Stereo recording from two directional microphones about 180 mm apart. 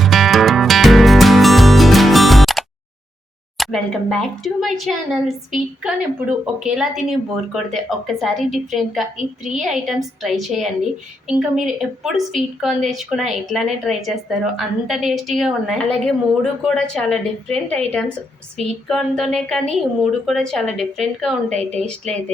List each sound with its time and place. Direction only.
0.0 s music: centre (ahead or behind)
3.6 s speech: centre (ahead or behind)
21.5 s a woman's voice: 40° right (ahead or behind)